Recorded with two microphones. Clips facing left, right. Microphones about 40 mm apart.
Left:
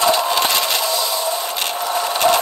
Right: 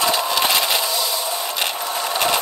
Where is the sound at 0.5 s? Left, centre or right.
Centre.